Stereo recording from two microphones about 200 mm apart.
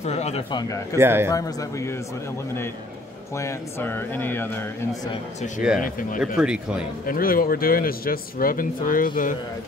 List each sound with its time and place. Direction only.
0.0 s speech: 35° left (ahead or behind)
0.9 s a man's voice: 10° right (ahead or behind)
1.3 s speech: 15° left (ahead or behind)
3.3 s speech: 15° left (ahead or behind)
5.8 s speech: 40° left (ahead or behind)
6.3 s speech: 5° right (ahead or behind)
7.1 s speech: 45° left (ahead or behind)